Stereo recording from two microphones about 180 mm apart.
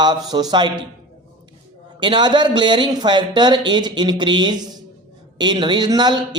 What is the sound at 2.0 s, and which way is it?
Speech, 25° right (ahead or behind).